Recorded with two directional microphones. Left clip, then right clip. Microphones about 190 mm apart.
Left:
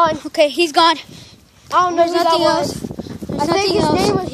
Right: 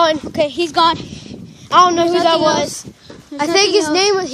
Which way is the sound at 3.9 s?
60° right (ahead or behind).